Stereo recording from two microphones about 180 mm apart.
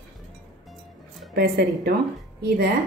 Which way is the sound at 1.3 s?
65° right (ahead or behind).